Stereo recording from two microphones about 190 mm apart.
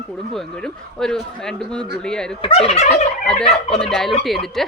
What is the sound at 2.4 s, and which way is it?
Fowl, 30° left (ahead or behind).